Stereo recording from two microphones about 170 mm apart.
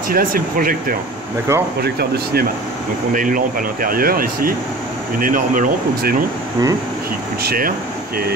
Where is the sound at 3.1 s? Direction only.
55° right (ahead or behind).